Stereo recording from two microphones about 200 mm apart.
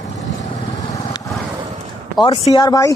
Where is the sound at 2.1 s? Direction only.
25° left (ahead or behind).